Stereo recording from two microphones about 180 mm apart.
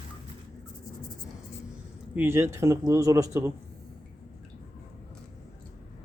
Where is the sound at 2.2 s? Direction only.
15° right (ahead or behind).